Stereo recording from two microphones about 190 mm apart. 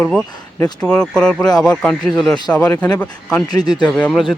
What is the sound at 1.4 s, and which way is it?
Speech, 20° left (ahead or behind).